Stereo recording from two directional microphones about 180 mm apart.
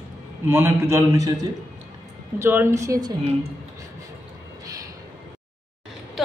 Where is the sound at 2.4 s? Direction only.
15° right (ahead or behind).